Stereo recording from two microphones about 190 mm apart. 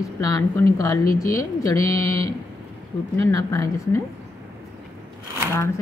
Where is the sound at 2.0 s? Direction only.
15° left (ahead or behind).